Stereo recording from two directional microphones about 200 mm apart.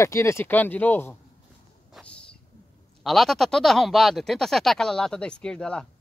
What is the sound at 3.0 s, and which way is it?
Speech, centre (ahead or behind).